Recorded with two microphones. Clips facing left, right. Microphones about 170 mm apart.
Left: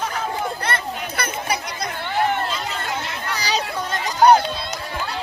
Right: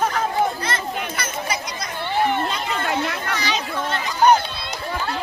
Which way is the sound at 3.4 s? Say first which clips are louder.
Left 4 dB; 35° left (ahead or behind).